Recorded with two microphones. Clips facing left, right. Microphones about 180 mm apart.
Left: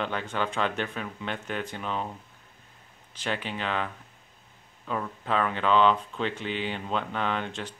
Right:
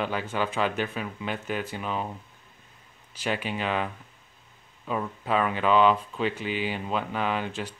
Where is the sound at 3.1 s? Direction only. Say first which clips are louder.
Right 3 dB; 10° right (ahead or behind).